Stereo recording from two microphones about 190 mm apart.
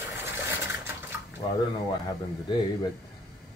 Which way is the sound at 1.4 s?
25° left (ahead or behind).